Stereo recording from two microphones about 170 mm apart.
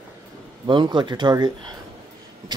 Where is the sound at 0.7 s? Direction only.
25° right (ahead or behind).